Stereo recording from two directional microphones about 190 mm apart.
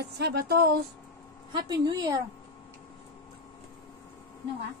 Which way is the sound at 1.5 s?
20° right (ahead or behind).